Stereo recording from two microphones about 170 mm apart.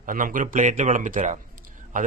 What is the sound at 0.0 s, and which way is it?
Speech, 50° right (ahead or behind).